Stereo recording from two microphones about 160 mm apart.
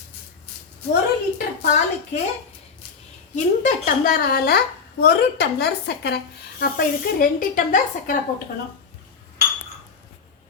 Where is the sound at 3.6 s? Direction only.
55° left (ahead or behind); by 6.2 s 90° left.